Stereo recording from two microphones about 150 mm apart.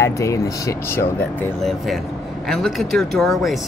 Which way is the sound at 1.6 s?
Centre (ahead or behind).